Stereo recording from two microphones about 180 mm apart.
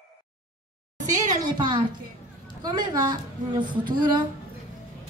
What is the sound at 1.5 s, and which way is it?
A woman's voice, 25° right (ahead or behind).